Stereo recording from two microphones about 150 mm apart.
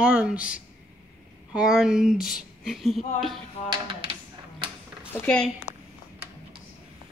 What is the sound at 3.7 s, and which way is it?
Speech, 35° right (ahead or behind).